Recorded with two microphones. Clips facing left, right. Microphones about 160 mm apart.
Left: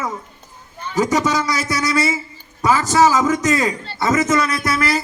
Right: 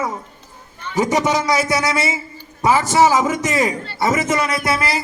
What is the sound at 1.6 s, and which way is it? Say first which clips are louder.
A man's voice: even; 25° right (ahead or behind).